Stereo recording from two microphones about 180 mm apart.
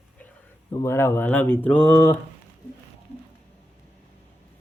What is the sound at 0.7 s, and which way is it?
Speech, 15° left (ahead or behind).